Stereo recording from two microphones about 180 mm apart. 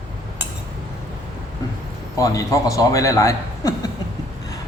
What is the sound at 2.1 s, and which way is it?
A man's voice, 20° left (ahead or behind).